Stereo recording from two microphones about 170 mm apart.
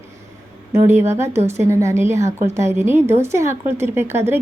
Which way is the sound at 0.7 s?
15° right (ahead or behind).